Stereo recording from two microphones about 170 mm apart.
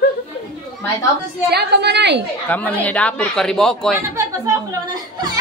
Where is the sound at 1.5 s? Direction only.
75° right (ahead or behind).